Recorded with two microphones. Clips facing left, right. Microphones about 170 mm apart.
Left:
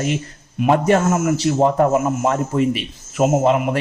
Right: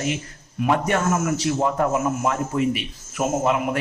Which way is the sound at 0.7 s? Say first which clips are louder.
Left 6 dB; 30° left (ahead or behind).